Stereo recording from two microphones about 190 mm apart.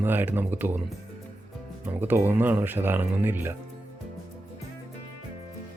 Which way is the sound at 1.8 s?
10° right (ahead or behind).